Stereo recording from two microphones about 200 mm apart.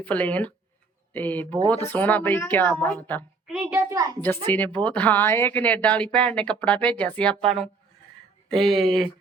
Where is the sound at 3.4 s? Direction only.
5° right (ahead or behind).